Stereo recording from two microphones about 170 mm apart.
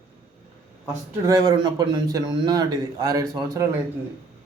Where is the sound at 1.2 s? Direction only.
20° right (ahead or behind).